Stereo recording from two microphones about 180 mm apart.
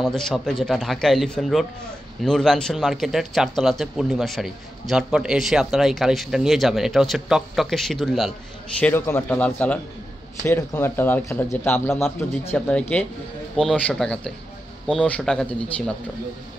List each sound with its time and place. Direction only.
0.0 s a man's voice: centre (ahead or behind)